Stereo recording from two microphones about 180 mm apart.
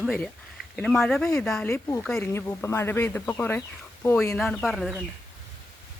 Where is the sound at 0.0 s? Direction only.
5° left (ahead or behind).